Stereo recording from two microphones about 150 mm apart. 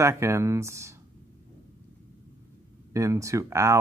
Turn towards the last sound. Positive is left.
turn(degrees=-20)  # may be behind; listen again after turning